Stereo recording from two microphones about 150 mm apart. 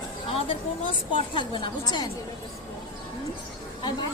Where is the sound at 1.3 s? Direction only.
30° left (ahead or behind).